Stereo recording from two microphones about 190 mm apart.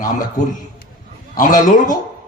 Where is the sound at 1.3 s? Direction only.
45° left (ahead or behind).